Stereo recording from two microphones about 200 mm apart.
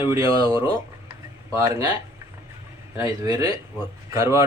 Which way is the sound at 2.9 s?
20° right (ahead or behind).